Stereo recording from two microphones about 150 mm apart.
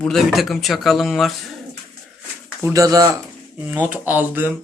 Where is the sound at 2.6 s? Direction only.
20° right (ahead or behind).